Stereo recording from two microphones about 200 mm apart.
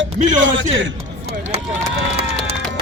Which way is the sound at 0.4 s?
70° right (ahead or behind).